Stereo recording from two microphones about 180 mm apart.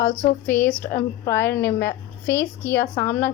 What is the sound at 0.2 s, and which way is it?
Speech, 50° left (ahead or behind).